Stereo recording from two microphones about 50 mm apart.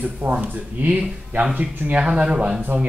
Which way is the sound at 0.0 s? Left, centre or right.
Right.